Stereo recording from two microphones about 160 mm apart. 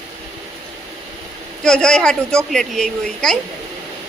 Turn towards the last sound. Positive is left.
turn(degrees=5)  # may be behind; listen again after turning